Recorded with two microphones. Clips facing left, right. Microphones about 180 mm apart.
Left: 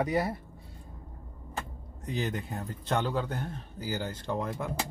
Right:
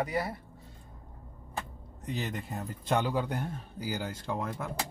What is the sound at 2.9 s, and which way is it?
Speech, 10° right (ahead or behind).